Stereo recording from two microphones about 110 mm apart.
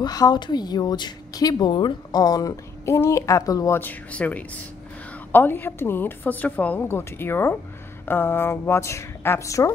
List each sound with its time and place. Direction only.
0.0 s speech: 35° left (ahead or behind)
3.7 s a woman's voice: 15° left (ahead or behind)